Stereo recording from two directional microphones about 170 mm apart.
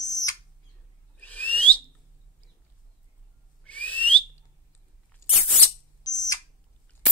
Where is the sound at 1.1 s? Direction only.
10° left (ahead or behind).